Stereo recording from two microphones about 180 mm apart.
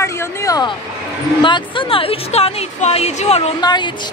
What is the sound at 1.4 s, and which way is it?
Speech, 30° left (ahead or behind).